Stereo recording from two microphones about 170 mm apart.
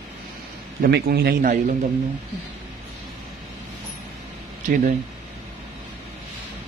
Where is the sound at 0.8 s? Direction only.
65° right (ahead or behind).